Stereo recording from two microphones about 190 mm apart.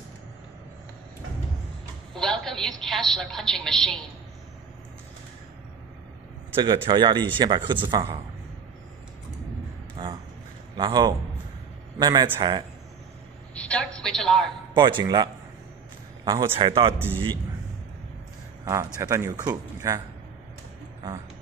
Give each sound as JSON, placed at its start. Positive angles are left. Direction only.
{"t": 2.1, "sound": "a woman's voice", "side_deg": 5}
{"t": 6.5, "sound": "speech", "side_deg": -25}
{"t": 10.0, "sound": "a sound", "side_deg": -25}
{"t": 10.8, "sound": "speech", "side_deg": -20}
{"t": 13.6, "sound": "a woman's voice", "side_deg": 5}
{"t": 14.7, "sound": "speech", "side_deg": -25}
{"t": 16.3, "sound": "speech", "side_deg": -20}
{"t": 16.5, "sound": "speech", "side_deg": -30}
{"t": 18.9, "sound": "speech", "side_deg": -15}